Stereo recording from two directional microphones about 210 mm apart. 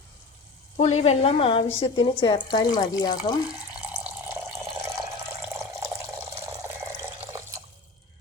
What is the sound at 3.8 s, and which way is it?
Water tap, 10° right (ahead or behind).